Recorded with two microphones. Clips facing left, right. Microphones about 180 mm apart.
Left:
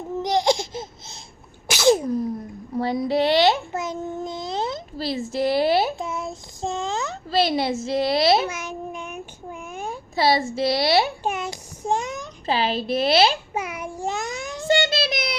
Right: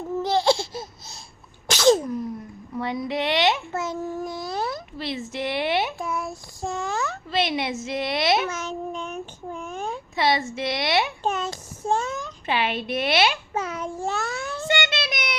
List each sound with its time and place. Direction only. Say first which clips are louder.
0.2 s a sound: left 1 dB; 15° left (ahead or behind)
1.6 s sneeze: even; 10° left (ahead or behind)
2.0 s sneeze: left 4 dB; 35° left (ahead or behind)
2.7 s a woman's voice: left 5 dB; 35° left (ahead or behind)
3.7 s a sound: even; 15° left (ahead or behind)
4.9 s a woman's voice: left 7 dB; 35° left (ahead or behind)
6.0 s child singing: even; 20° left (ahead or behind)
7.3 s a woman's voice: left 5 dB; 35° left (ahead or behind)
8.4 s child singing: right 1 dB; 10° left (ahead or behind)
10.2 s a woman's voice: left 3 dB; 35° left (ahead or behind)
11.2 s a sound: even; 10° left (ahead or behind)
12.5 s a woman's voice: left 3 dB; 35° left (ahead or behind)
13.5 s child singing: right 1 dB; 10° left (ahead or behind)
14.7 s child singing: left 6 dB; 30° left (ahead or behind)